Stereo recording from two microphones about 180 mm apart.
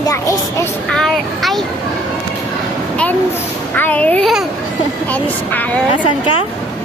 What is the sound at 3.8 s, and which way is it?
Speech, 10° left (ahead or behind).